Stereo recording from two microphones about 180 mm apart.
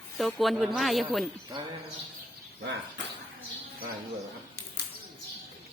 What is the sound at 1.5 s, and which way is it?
Speech, 25° right (ahead or behind).